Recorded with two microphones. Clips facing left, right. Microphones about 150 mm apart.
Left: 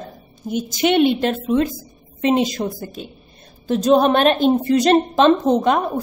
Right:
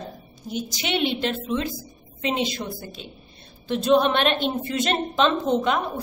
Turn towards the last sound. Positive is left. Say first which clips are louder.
# left 7 dB
turn(degrees=45)  # may be behind; listen again after turning